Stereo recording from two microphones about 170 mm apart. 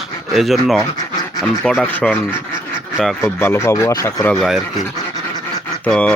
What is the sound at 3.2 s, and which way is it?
Speech, 15° left (ahead or behind).